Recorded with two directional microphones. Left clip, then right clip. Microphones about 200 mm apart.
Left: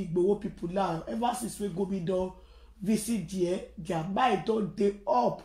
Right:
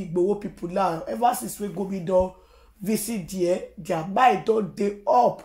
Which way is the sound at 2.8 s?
25° right (ahead or behind).